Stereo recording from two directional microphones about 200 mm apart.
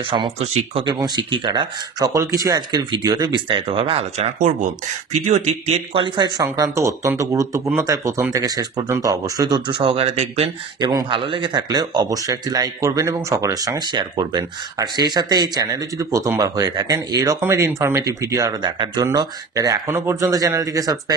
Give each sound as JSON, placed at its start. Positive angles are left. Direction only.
{"t": 0.1, "sound": "speech", "side_deg": -30}